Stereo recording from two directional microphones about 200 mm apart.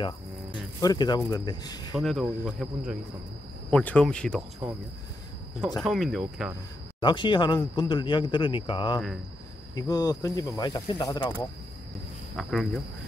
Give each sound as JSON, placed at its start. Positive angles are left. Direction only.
{"t": 0.0, "sound": "speech", "side_deg": 20}
{"t": 2.0, "sound": "speech", "side_deg": 0}
{"t": 5.8, "sound": "speech", "side_deg": 0}
{"t": 7.0, "sound": "speech", "side_deg": 25}
{"t": 12.4, "sound": "speech", "side_deg": 0}